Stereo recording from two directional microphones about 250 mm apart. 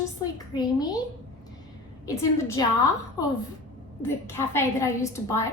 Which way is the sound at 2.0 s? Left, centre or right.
Centre.